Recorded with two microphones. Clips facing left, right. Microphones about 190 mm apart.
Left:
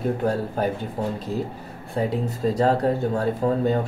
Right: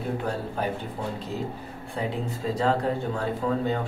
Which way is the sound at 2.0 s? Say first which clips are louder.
Left 6 dB; 40° left (ahead or behind).